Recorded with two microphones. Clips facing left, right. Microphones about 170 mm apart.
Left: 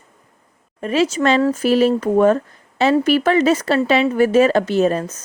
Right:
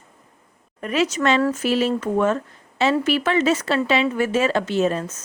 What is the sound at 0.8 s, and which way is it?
A woman's voice, 30° left (ahead or behind).